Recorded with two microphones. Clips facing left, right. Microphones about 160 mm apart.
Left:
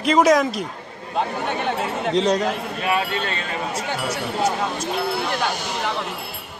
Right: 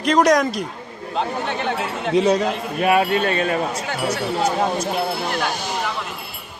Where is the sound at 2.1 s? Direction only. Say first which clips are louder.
Right 3 dB; 5° right (ahead or behind).